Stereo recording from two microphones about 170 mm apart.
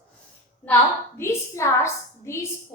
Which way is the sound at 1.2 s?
15° left (ahead or behind).